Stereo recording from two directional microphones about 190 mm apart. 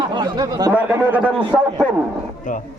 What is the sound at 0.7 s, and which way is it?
A man's voice, 10° right (ahead or behind).